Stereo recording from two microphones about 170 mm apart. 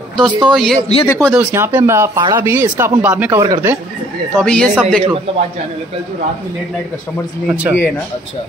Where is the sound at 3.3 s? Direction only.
20° right (ahead or behind).